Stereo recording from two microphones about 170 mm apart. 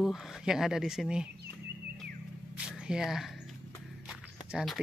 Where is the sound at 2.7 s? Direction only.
5° right (ahead or behind).